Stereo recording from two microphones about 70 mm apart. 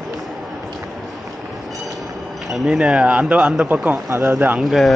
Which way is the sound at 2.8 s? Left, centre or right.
Centre.